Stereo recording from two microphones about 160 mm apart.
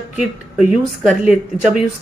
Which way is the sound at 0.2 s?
5° right (ahead or behind).